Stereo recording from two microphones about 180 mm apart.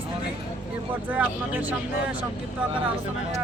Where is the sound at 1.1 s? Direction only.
10° right (ahead or behind).